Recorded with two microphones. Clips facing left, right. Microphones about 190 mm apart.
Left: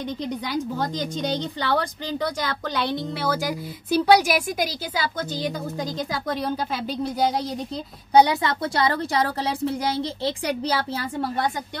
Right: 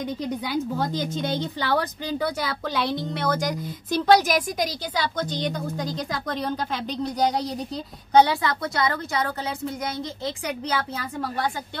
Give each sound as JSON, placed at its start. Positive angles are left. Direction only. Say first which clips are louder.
{"t": 0.0, "sound": "a woman's voice", "louder": "even", "side_deg": -5}
{"t": 8.1, "sound": "a woman's voice", "louder": "left 1 dB", "side_deg": 15}